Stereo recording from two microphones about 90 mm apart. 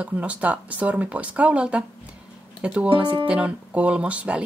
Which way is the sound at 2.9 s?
70° right (ahead or behind).